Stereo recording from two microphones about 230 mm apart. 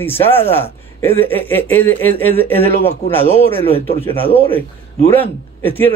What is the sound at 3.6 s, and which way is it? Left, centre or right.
Speech, left.